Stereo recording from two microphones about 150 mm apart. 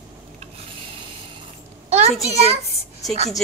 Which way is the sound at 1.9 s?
45° right (ahead or behind).